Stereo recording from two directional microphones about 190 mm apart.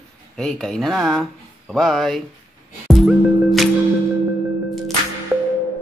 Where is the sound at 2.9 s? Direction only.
Centre (ahead or behind).